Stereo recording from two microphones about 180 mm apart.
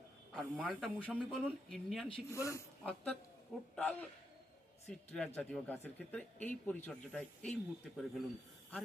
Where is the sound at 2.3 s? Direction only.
15° left (ahead or behind).